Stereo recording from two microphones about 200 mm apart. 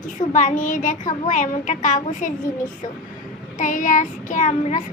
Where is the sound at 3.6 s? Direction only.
40° left (ahead or behind).